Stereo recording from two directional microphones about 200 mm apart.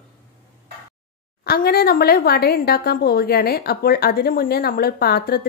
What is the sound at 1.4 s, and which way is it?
A woman's voice, 50° left (ahead or behind).